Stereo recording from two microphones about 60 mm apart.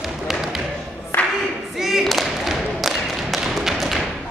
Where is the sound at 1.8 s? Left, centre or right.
Centre.